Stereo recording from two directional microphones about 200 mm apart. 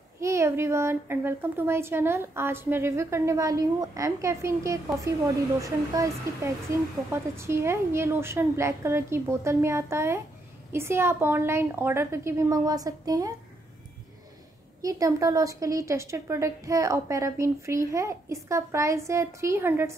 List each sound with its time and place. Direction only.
0.2 s a woman's voice: 15° right (ahead or behind)
14.8 s a woman's voice: 15° right (ahead or behind)